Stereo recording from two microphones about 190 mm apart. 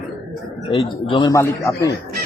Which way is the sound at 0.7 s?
30° left (ahead or behind).